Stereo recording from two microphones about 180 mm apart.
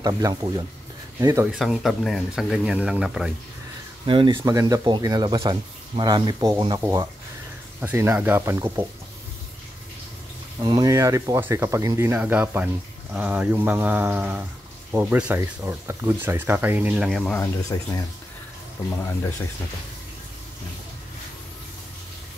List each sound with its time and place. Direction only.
0.0 s speech: 20° right (ahead or behind)
1.5 s speech: centre (ahead or behind)
4.0 s speech: 30° right (ahead or behind)
10.6 s speech: 20° right (ahead or behind); by 17.4 s centre (ahead or behind)
17.7 s speech: 20° left (ahead or behind)